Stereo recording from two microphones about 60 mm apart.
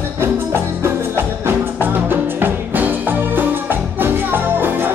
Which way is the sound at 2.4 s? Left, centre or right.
Right.